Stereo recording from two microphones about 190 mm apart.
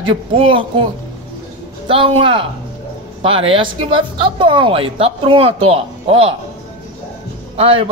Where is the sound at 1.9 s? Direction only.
25° right (ahead or behind).